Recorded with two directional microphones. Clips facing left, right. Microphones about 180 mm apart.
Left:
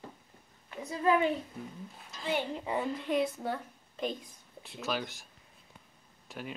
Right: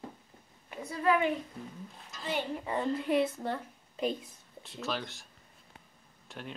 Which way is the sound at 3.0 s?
5° right (ahead or behind).